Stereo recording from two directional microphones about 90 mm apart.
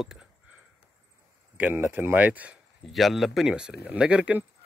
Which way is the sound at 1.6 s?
20° right (ahead or behind).